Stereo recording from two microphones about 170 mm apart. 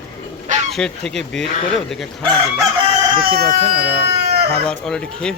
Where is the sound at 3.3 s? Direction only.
70° right (ahead or behind).